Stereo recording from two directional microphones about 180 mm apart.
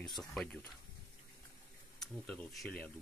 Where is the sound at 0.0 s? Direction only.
5° left (ahead or behind).